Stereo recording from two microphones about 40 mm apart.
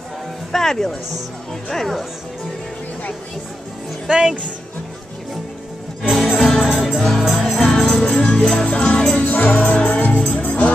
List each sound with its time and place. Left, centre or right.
0.5 s speech: centre
4.1 s speech: centre
6.2 s music: centre
8.0 s music: left
8.4 s music: centre
8.6 s music: left
9.2 s music: left
9.8 s music: left